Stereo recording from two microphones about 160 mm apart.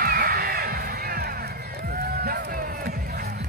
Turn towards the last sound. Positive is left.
turn(degrees=-70)  # may be behind; listen again after turning